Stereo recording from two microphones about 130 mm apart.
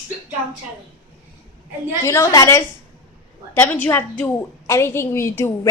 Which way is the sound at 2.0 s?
25° left (ahead or behind).